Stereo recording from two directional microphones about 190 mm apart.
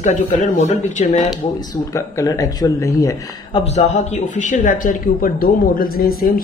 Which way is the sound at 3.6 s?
40° left (ahead or behind).